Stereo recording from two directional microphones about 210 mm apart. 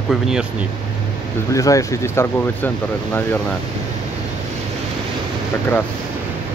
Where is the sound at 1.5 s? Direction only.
15° left (ahead or behind).